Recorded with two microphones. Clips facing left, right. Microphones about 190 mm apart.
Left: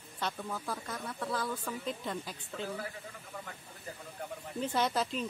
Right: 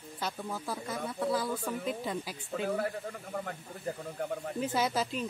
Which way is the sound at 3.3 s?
50° right (ahead or behind).